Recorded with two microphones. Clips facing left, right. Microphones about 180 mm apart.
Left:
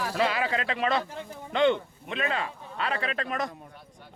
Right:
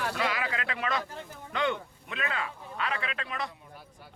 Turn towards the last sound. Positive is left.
turn(degrees=45)  # may be behind; listen again after turning